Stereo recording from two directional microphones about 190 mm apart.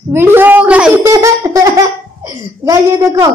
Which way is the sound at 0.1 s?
10° right (ahead or behind).